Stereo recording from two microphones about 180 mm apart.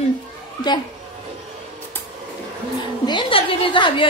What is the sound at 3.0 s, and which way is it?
A woman's voice, 30° left (ahead or behind).